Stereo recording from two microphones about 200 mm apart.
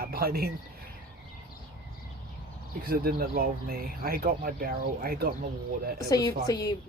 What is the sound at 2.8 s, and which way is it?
Speech, 50° right (ahead or behind).